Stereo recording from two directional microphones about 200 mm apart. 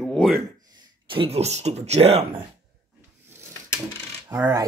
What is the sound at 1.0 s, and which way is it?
Speech, 25° right (ahead or behind).